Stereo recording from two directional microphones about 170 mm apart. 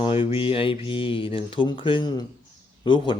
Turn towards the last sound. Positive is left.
turn(degrees=25)  # may be behind; listen again after turning